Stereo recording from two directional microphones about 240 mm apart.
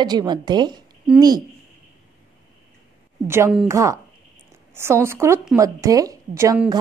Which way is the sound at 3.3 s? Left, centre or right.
Centre.